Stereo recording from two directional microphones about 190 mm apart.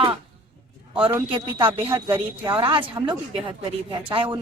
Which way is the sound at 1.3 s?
25° right (ahead or behind).